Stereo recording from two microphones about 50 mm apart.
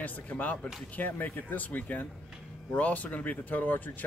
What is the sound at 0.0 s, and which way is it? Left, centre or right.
Speech, left.